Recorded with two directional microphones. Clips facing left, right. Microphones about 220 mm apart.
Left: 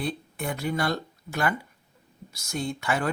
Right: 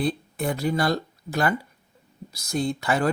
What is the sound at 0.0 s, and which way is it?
Speech, 35° right (ahead or behind).